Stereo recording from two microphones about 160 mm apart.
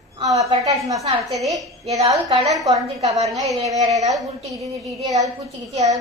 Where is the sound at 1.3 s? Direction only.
Centre (ahead or behind).